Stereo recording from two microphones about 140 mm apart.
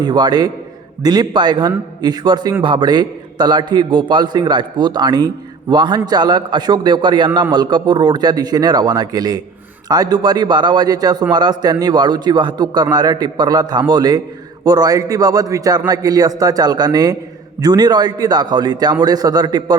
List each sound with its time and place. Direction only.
0.0 s a man's voice: 30° right (ahead or behind)